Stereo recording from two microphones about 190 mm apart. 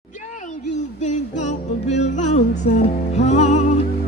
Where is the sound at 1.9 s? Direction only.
35° left (ahead or behind).